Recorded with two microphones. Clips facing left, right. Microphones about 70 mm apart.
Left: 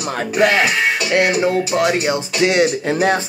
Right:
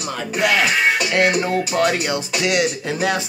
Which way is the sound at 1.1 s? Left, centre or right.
Centre.